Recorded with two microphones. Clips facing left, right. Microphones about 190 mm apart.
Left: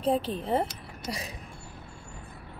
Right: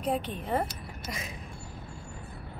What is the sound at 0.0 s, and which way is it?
Speech, 30° left (ahead or behind).